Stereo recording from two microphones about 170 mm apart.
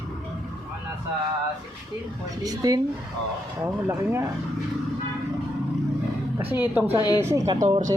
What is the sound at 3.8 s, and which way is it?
Speech, 15° right (ahead or behind).